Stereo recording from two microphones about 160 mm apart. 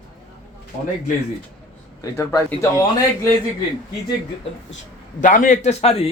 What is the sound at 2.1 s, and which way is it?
Speech, 20° left (ahead or behind).